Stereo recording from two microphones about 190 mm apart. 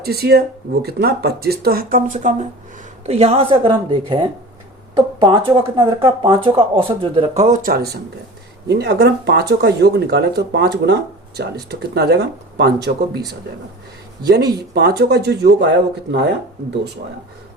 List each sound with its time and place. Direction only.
0.0 s speech: 55° right (ahead or behind)
3.1 s speech: 30° right (ahead or behind); by 15.7 s 60° right (ahead or behind)